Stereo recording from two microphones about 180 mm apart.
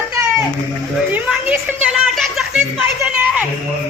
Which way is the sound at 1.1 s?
5° right (ahead or behind).